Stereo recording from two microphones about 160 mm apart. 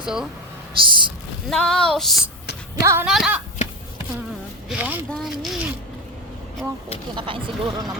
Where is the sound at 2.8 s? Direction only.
20° right (ahead or behind).